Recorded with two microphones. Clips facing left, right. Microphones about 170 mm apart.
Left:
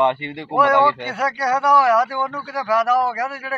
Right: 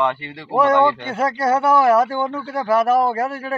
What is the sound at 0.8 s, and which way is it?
Speech, 25° right (ahead or behind).